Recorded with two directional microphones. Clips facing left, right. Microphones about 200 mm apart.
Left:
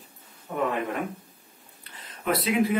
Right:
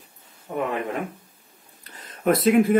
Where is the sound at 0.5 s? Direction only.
20° right (ahead or behind).